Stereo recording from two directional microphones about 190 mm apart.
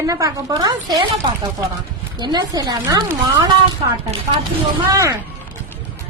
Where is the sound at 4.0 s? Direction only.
35° right (ahead or behind).